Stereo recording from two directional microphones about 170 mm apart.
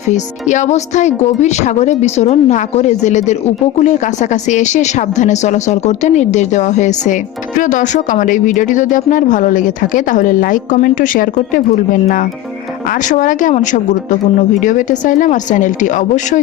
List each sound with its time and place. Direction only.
0.1 s speech: 45° left (ahead or behind)